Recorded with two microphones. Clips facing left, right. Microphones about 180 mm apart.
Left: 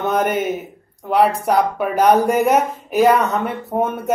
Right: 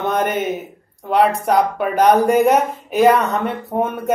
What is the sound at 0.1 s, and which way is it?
Speech, 10° left (ahead or behind).